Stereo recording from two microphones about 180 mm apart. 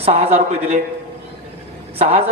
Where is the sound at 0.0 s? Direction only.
35° right (ahead or behind).